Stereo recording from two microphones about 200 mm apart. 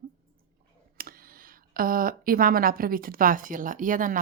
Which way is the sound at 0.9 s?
45° right (ahead or behind).